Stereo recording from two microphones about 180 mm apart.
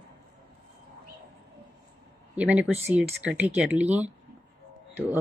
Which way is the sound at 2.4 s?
10° right (ahead or behind).